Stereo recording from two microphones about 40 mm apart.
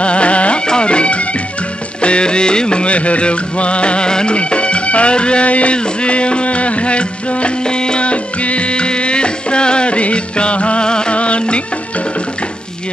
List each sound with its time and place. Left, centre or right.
0.0 s music: left
0.7 s speech: left
2.0 s music: left